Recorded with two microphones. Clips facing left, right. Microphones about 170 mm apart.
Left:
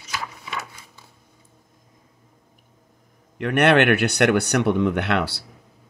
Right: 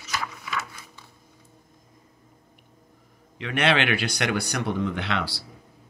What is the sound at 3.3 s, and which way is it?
Speech, 55° left (ahead or behind).